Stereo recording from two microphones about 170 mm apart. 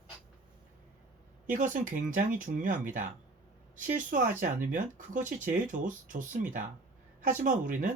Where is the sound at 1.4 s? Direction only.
50° right (ahead or behind).